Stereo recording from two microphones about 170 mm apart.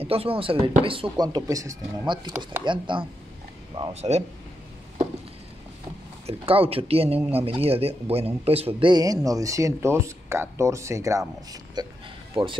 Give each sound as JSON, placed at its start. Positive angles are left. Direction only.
{"t": 0.0, "sound": "speech", "side_deg": -35}
{"t": 3.9, "sound": "speech", "side_deg": -40}
{"t": 6.2, "sound": "speech", "side_deg": -35}